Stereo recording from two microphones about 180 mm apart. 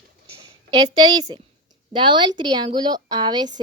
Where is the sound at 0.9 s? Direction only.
25° right (ahead or behind).